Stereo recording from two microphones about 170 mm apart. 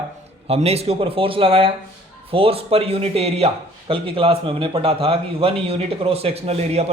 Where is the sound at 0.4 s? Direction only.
35° right (ahead or behind).